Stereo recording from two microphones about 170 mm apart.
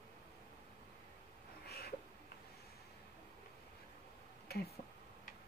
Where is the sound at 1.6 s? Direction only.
70° left (ahead or behind).